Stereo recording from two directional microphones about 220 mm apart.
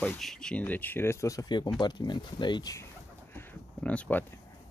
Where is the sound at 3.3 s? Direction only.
10° left (ahead or behind).